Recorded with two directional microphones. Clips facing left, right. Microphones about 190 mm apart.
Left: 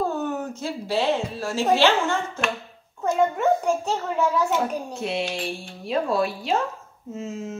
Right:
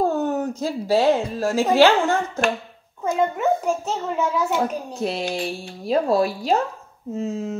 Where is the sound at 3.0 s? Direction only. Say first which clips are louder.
Even; 5° right (ahead or behind).